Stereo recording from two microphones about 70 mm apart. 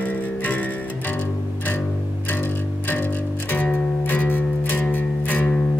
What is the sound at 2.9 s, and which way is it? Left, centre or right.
Music, left.